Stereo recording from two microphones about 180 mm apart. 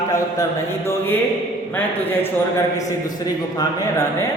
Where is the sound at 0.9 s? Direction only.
10° left (ahead or behind).